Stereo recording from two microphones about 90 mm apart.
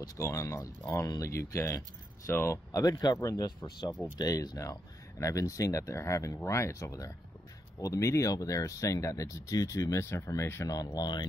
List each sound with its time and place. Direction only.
0.2 s speech: 35° left (ahead or behind)
2.7 s speech: 45° left (ahead or behind)
11.0 s speech: 50° left (ahead or behind)